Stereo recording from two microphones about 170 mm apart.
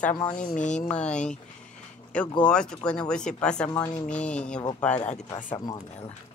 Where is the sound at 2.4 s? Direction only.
5° left (ahead or behind).